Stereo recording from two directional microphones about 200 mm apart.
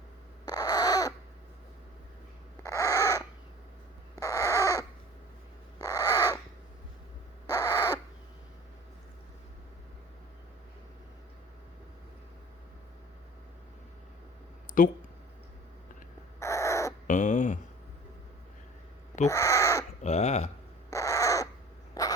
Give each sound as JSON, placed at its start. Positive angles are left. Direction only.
{"t": 0.4, "sound": "a sound", "side_deg": 20}
{"t": 2.6, "sound": "crow", "side_deg": 15}
{"t": 4.1, "sound": "a sound", "side_deg": 15}
{"t": 5.8, "sound": "crow", "side_deg": 20}
{"t": 7.5, "sound": "owl", "side_deg": 15}
{"t": 14.8, "sound": "speech", "side_deg": 45}
{"t": 16.4, "sound": "crow", "side_deg": 15}
{"t": 17.1, "sound": "a sound", "side_deg": 35}
{"t": 19.3, "sound": "crow", "side_deg": 15}
{"t": 20.0, "sound": "crow", "side_deg": 35}
{"t": 20.9, "sound": "crow", "side_deg": 15}
{"t": 22.0, "sound": "a sound", "side_deg": 20}